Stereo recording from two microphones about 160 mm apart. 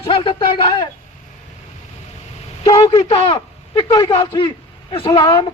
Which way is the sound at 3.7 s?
20° left (ahead or behind).